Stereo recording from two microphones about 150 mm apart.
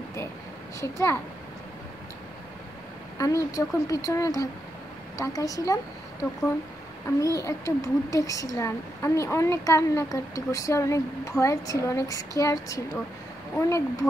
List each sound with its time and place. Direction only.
0.7 s a woman's voice: 20° left (ahead or behind)
3.2 s a woman's voice: 20° left (ahead or behind)
7.3 s a woman's voice: 20° left (ahead or behind)